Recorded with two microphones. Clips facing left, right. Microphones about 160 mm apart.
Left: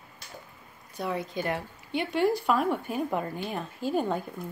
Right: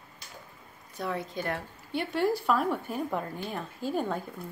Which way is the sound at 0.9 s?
Centre (ahead or behind).